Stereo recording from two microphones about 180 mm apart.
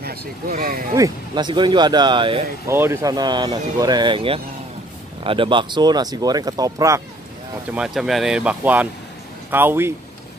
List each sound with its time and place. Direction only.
0.0 s speech: 60° right (ahead or behind)
0.9 s speech: 20° right (ahead or behind)
2.7 s speech: 15° right (ahead or behind)
7.7 s speech: 5° right (ahead or behind)